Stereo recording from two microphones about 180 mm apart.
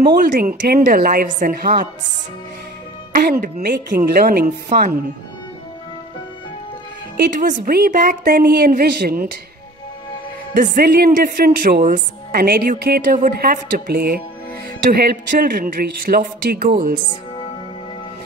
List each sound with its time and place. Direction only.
0.0 s a woman's voice: 50° right (ahead or behind)
3.1 s a woman's voice: 50° right (ahead or behind)
7.3 s a woman's voice: 50° right (ahead or behind)
10.5 s a woman's voice: 50° right (ahead or behind)